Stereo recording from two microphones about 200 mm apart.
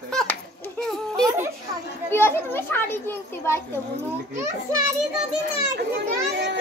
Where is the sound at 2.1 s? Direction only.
10° left (ahead or behind).